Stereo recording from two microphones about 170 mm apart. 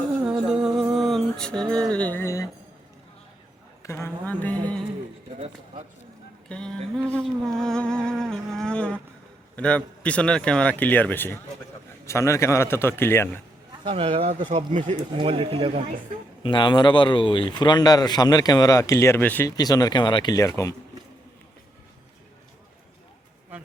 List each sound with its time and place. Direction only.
0.3 s music: 5° right (ahead or behind)
1.7 s a man's voice: 5° left (ahead or behind)
3.8 s a man's voice: 15° left (ahead or behind)
6.5 s a sound: 5° left (ahead or behind)
9.6 s a man's voice: 5° left (ahead or behind)
13.8 s speech: 35° right (ahead or behind)
14.7 s speech: 45° right (ahead or behind)
15.2 s speech: 35° right (ahead or behind)
16.4 s speech: 30° left (ahead or behind); by 19.5 s 10° left (ahead or behind)
19.5 s speech: 20° left (ahead or behind)